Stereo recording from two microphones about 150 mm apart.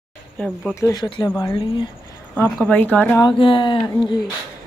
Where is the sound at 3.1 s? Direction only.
35° left (ahead or behind).